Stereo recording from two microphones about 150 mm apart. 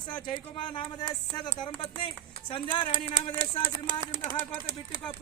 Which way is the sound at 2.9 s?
65° left (ahead or behind).